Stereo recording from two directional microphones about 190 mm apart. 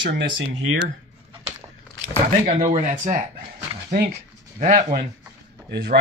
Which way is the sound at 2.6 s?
40° right (ahead or behind).